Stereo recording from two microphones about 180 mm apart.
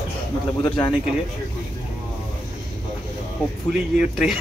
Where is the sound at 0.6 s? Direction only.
25° left (ahead or behind).